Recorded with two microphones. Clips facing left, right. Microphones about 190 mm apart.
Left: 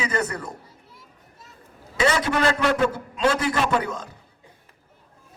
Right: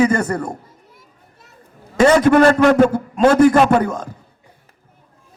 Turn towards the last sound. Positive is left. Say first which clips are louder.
# right 8 dB
turn(degrees=-50)  # may be behind; listen again after turning